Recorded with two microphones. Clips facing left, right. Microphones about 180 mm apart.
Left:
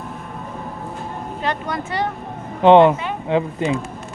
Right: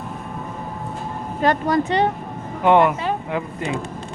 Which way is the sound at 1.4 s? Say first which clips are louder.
Right 7 dB; 45° right (ahead or behind).